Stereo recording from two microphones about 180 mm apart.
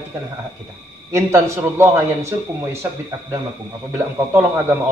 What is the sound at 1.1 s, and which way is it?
A man's voice, 15° right (ahead or behind).